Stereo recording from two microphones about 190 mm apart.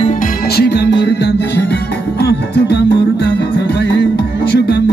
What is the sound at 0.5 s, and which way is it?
Music, 60° left (ahead or behind).